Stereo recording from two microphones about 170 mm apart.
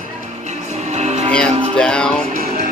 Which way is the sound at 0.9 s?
40° right (ahead or behind).